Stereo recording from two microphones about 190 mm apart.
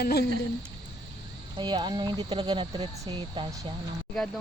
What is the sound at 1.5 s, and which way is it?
Speech, 25° right (ahead or behind).